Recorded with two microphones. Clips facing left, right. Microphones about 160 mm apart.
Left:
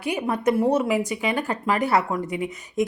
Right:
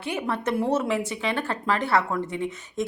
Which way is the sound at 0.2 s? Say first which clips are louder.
Left 4 dB; 10° left (ahead or behind).